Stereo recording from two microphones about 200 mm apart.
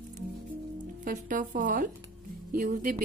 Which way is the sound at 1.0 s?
40° right (ahead or behind).